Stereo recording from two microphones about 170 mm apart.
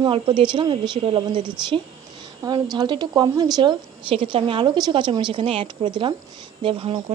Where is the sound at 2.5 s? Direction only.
25° right (ahead or behind).